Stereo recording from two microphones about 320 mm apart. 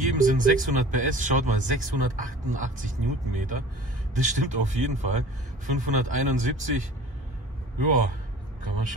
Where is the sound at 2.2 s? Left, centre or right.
Right.